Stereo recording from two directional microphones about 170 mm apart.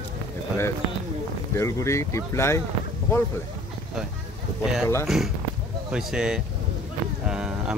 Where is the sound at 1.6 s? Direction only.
15° left (ahead or behind).